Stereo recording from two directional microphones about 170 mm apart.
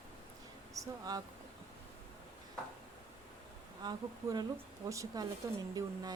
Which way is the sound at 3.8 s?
25° right (ahead or behind).